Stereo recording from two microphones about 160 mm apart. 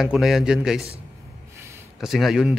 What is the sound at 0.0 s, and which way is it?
Speech, centre (ahead or behind).